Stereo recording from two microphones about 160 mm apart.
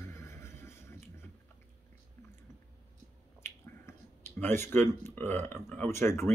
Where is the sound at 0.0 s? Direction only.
15° left (ahead or behind).